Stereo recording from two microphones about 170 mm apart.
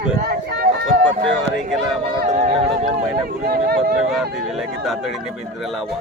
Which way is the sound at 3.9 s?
Centre (ahead or behind).